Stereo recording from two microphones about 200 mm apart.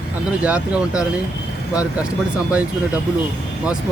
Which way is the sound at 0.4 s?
5° right (ahead or behind).